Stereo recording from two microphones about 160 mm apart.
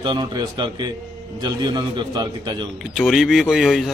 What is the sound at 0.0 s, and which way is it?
A man's voice, 25° right (ahead or behind).